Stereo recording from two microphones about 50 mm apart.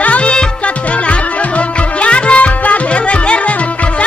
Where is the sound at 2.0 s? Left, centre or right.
Left.